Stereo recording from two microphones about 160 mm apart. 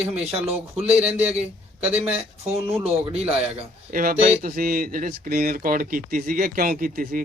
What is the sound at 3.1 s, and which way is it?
Speech, 40° right (ahead or behind).